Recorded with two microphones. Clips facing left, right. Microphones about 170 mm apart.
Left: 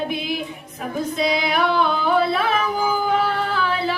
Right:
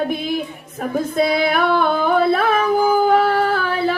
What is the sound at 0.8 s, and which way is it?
Female singing, 50° right (ahead or behind).